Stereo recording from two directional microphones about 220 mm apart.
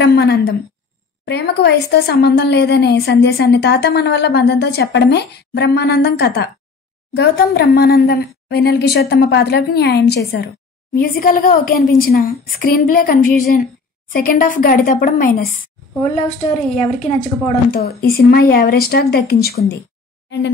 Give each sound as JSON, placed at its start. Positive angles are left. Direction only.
{"t": 0.0, "sound": "a woman's voice", "side_deg": 50}
{"t": 16.7, "sound": "speech", "side_deg": 35}